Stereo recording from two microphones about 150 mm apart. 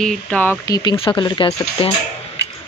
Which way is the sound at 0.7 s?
30° left (ahead or behind).